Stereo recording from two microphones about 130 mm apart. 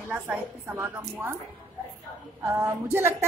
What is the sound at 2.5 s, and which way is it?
Speech, 20° right (ahead or behind).